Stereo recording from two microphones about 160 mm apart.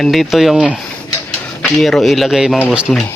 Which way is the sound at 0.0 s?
Centre (ahead or behind).